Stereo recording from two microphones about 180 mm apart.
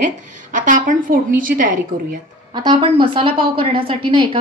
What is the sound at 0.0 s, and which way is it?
Speech, 45° right (ahead or behind).